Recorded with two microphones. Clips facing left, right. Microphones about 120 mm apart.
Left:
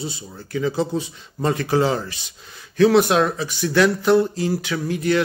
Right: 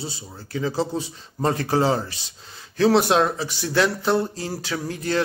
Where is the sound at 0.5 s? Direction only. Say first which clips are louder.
Left 2 dB; 30° right (ahead or behind).